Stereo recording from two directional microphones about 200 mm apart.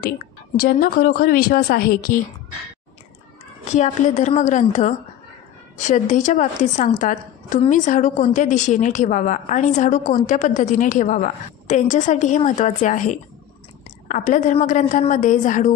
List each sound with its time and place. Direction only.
0.6 s a woman's voice: 50° left (ahead or behind)
3.7 s a woman's voice: 35° left (ahead or behind)